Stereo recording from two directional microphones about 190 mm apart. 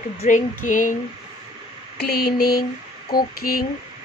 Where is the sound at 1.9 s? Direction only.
60° left (ahead or behind).